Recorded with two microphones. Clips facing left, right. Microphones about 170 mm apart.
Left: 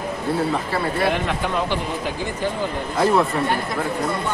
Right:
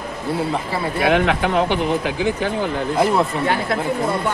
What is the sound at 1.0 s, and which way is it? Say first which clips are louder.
Speech: right 5 dB; 75° right (ahead or behind).